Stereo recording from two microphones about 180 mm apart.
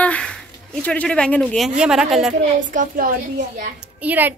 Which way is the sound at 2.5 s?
50° right (ahead or behind).